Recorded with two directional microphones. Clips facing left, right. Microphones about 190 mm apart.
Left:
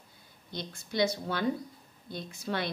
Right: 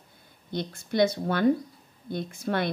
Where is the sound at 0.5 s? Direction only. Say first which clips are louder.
Right 6 dB; 55° right (ahead or behind).